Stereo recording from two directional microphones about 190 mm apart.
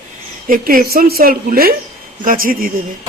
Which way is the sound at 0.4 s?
50° right (ahead or behind).